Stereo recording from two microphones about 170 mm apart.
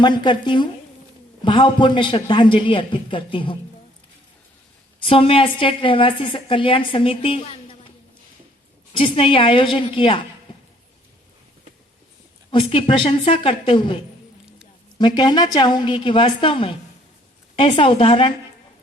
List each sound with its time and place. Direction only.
0.0 s a man's voice: 25° left (ahead or behind)
5.0 s a woman's voice: 35° left (ahead or behind)
8.9 s a woman's voice: 30° left (ahead or behind)
12.5 s a woman's voice: 30° left (ahead or behind)